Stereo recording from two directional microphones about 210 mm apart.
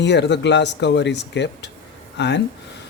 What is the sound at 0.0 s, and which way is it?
Speech, 55° left (ahead or behind).